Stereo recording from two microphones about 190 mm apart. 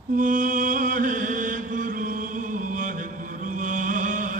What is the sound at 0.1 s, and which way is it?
Chant, 45° right (ahead or behind).